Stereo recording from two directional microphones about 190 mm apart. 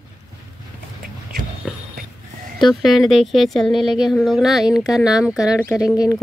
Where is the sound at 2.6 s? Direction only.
Centre (ahead or behind).